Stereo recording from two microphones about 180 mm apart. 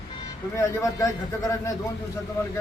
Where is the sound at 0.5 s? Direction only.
15° left (ahead or behind).